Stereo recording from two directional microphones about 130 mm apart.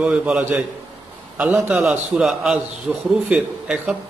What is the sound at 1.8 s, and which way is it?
A man's voice, centre (ahead or behind).